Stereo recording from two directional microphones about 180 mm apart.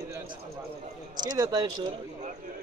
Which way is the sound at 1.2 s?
20° right (ahead or behind).